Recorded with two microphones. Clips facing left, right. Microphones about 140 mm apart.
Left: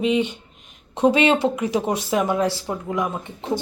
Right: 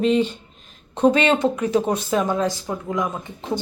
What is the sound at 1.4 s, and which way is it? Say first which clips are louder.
Speech: right 2 dB; 25° left (ahead or behind).